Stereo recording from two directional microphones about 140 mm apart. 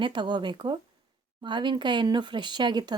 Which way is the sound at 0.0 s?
35° right (ahead or behind).